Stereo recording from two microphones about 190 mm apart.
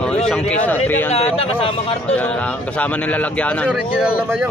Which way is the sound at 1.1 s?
30° left (ahead or behind).